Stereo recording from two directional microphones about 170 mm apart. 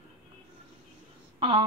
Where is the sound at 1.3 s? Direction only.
30° right (ahead or behind).